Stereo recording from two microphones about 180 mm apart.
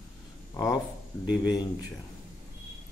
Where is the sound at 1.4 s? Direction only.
25° left (ahead or behind).